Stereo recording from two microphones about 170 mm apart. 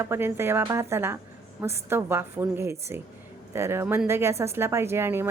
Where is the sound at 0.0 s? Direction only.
15° right (ahead or behind).